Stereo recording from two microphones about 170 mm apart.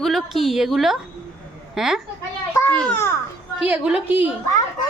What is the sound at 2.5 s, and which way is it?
Speech, 10° left (ahead or behind).